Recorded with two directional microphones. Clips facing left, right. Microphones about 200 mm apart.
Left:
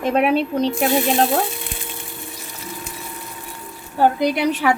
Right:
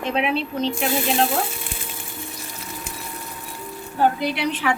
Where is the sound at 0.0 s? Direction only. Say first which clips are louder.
Left 5 dB; 45° left (ahead or behind).